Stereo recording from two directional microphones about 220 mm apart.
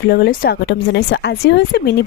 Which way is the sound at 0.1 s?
45° left (ahead or behind).